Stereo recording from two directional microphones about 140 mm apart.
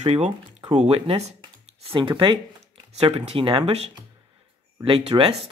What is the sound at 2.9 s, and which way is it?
Speech, 45° right (ahead or behind).